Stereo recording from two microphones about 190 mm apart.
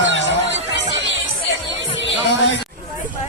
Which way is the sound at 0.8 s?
70° right (ahead or behind).